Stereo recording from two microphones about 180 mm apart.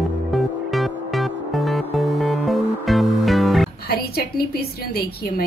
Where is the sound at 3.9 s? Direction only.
60° left (ahead or behind).